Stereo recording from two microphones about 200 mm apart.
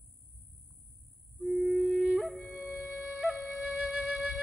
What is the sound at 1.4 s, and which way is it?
Flute, centre (ahead or behind).